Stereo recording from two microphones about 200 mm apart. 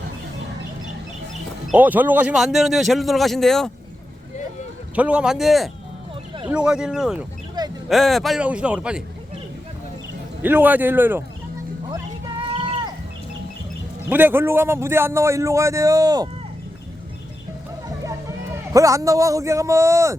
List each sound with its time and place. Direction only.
1.7 s speech: 10° right (ahead or behind)
4.9 s speech: 5° right (ahead or behind)
10.4 s a man's voice: 10° right (ahead or behind)
14.1 s a man's voice: 10° right (ahead or behind)
18.7 s a man's voice: 15° right (ahead or behind)